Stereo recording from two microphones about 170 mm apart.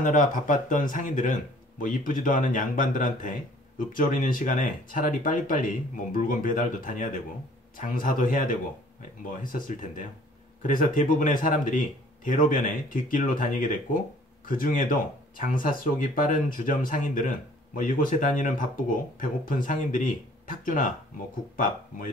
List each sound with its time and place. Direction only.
0.0 s speech: 50° left (ahead or behind)